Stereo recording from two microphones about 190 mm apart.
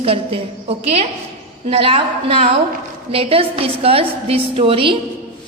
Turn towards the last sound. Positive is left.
turn(degrees=-30)  # may be behind; listen again after turning